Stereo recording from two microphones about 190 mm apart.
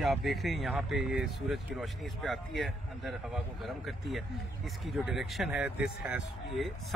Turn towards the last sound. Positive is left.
turn(degrees=-5)  # may be behind; listen again after turning